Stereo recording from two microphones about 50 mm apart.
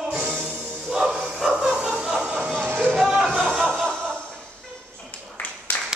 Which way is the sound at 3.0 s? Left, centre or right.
Centre.